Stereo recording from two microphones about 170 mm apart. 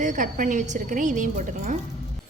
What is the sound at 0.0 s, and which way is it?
A woman's voice, 50° right (ahead or behind).